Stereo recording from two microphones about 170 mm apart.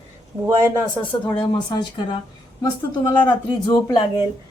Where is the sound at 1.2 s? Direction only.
25° left (ahead or behind).